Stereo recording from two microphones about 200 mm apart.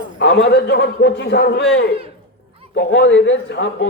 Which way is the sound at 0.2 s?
60° left (ahead or behind).